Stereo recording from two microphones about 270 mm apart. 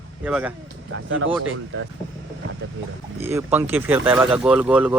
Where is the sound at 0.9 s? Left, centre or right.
Right.